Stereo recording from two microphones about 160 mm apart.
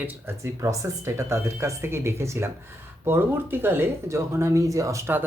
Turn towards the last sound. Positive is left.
turn(degrees=-15)  # may be behind; listen again after turning